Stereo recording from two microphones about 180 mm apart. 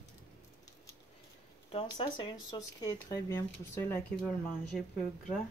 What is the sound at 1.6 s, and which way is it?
Speech, 30° left (ahead or behind).